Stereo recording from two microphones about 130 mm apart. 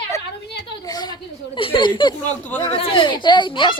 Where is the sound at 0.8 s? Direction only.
30° left (ahead or behind).